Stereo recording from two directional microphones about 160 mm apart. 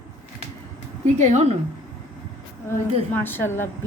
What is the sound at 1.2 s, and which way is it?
Speech, 45° right (ahead or behind).